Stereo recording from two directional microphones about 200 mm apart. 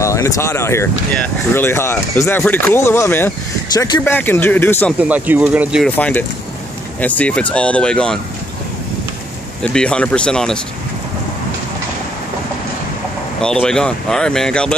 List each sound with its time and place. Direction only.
0.0 s speech: 15° left (ahead or behind)
4.0 s speech: 10° left (ahead or behind)
5.0 s speech: 10° right (ahead or behind)
5.9 s speech: 5° left (ahead or behind)
9.6 s speech: 5° left (ahead or behind)
13.4 s speech: 5° left (ahead or behind)